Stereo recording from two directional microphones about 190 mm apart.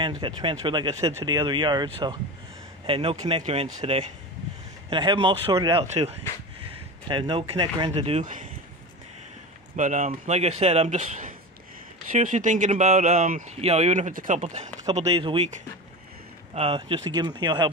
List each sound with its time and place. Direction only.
0.0 s speech: 25° right (ahead or behind); by 8.5 s 40° right (ahead or behind)
9.8 s speech: 40° right (ahead or behind); by 17.6 s 20° right (ahead or behind)